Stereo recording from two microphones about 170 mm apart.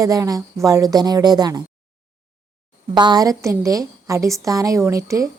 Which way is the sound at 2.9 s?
25° right (ahead or behind).